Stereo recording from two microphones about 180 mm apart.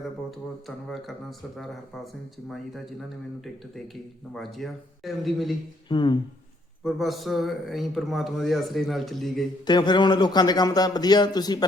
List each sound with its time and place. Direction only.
4.4 s a man's voice: centre (ahead or behind)
5.9 s a man's voice: 25° left (ahead or behind)
6.8 s a man's voice: centre (ahead or behind)
9.6 s a man's voice: 25° left (ahead or behind)